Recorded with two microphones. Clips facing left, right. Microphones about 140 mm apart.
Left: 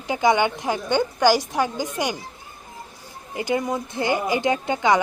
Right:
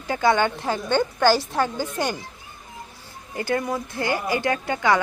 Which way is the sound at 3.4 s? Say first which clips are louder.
Left 1 dB; 15° left (ahead or behind).